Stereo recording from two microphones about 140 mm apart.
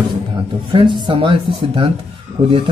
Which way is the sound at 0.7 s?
35° right (ahead or behind).